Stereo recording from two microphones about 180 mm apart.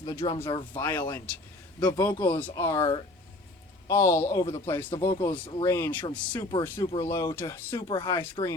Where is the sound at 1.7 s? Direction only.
20° left (ahead or behind).